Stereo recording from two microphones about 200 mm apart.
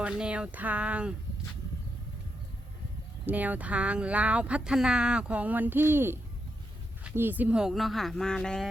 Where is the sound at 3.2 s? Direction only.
10° right (ahead or behind).